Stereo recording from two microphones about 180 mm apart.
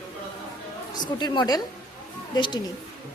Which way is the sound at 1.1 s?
25° left (ahead or behind).